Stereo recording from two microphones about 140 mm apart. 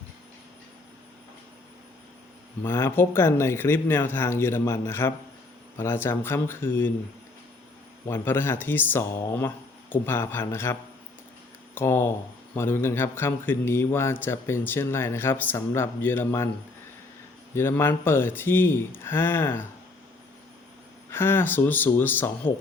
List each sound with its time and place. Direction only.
2.6 s a man's voice: 20° left (ahead or behind)
8.0 s a man's voice: 15° left (ahead or behind)
17.5 s a man's voice: 15° left (ahead or behind)
21.1 s a man's voice: 15° left (ahead or behind)